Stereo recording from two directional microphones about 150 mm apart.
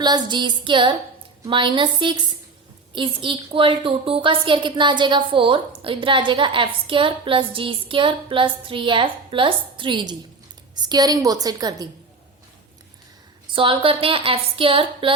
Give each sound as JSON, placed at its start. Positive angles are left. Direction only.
{"t": 0.0, "sound": "a woman's voice", "side_deg": -30}
{"t": 13.6, "sound": "a woman's voice", "side_deg": -35}